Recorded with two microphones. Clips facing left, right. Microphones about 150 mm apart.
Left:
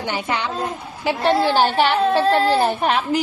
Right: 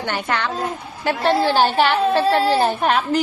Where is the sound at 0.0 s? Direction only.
10° left (ahead or behind).